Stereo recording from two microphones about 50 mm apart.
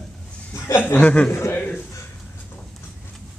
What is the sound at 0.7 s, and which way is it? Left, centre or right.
Speech, left.